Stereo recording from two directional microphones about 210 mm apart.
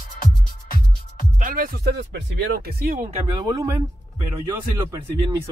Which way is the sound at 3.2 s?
20° right (ahead or behind).